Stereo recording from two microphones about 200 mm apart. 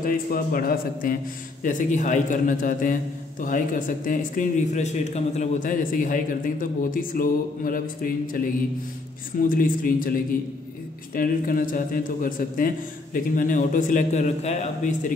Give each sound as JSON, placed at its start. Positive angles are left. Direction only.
{"t": 0.0, "sound": "a man's voice", "side_deg": 45}
{"t": 9.4, "sound": "a man's voice", "side_deg": 45}